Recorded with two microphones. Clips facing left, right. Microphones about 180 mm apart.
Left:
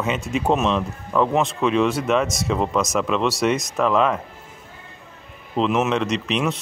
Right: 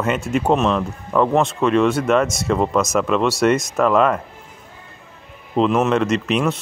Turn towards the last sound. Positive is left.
turn(degrees=0)  # may be behind; listen again after turning